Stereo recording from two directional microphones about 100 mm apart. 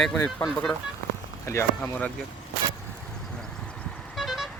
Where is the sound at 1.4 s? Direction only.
25° left (ahead or behind).